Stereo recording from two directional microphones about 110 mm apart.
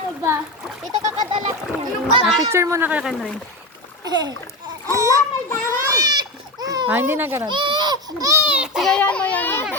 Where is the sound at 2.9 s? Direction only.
10° right (ahead or behind).